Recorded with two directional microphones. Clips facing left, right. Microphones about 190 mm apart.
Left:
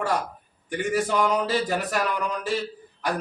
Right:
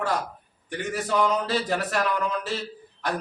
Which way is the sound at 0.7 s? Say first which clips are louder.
Left 3 dB; 10° left (ahead or behind).